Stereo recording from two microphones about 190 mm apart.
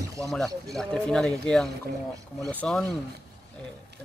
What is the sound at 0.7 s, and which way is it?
Speech, 5° left (ahead or behind).